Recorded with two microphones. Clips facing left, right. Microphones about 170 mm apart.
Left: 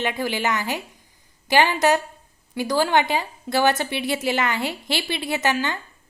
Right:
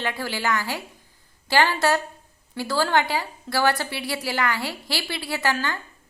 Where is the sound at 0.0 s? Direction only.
20° left (ahead or behind).